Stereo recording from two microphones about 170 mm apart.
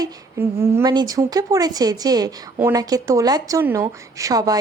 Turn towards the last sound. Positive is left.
turn(degrees=-20)  # may be behind; listen again after turning